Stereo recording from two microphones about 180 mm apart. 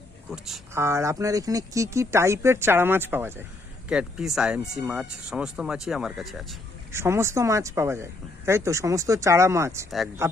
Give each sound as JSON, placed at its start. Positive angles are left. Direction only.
{"t": 0.3, "sound": "speech", "side_deg": 0}
{"t": 0.7, "sound": "speech", "side_deg": -15}
{"t": 6.9, "sound": "speech", "side_deg": -15}